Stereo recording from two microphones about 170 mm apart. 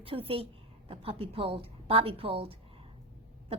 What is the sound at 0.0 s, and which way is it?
A woman's voice, 35° right (ahead or behind).